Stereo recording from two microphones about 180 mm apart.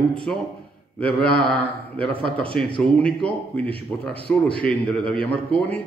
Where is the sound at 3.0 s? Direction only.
5° left (ahead or behind).